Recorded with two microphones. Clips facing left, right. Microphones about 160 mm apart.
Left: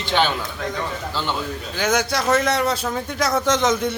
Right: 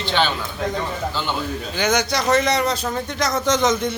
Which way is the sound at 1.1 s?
Centre (ahead or behind).